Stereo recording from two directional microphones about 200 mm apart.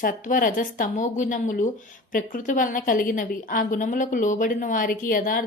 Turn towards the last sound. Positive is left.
turn(degrees=45)  # may be behind; listen again after turning